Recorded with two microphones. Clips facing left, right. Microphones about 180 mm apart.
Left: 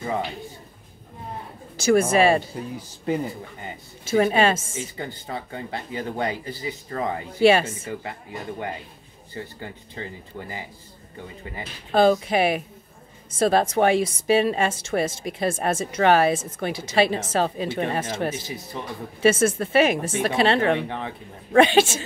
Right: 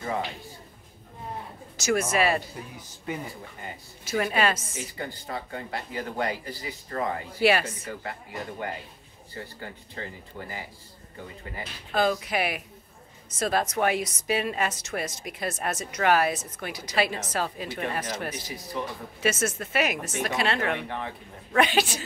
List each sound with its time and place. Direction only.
1.8 s a woman's voice: 30° left (ahead or behind)
3.6 s a woman's voice: 25° left (ahead or behind)
9.3 s a woman's voice: 20° left (ahead or behind)
11.5 s a woman's voice: 30° left (ahead or behind)